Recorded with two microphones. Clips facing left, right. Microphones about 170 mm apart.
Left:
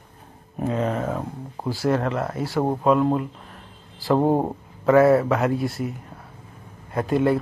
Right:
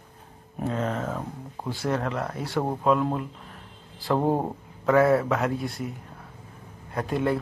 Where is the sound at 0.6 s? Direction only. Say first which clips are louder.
Left 4 dB; 10° left (ahead or behind).